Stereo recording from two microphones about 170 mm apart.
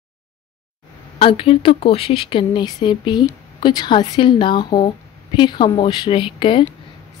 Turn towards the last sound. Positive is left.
turn(degrees=30)  # may be behind; listen again after turning